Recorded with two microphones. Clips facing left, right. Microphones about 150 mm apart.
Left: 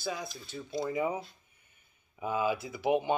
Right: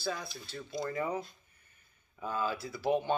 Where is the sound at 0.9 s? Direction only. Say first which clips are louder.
Left 3 dB; 20° left (ahead or behind).